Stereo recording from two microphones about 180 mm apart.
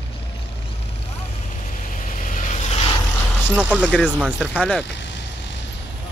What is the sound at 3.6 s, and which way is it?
Speech, 5° right (ahead or behind).